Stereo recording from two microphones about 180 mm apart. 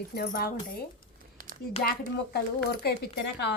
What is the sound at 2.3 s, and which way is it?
Speech, 65° left (ahead or behind).